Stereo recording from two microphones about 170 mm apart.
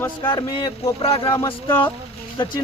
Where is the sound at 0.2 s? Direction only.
25° left (ahead or behind).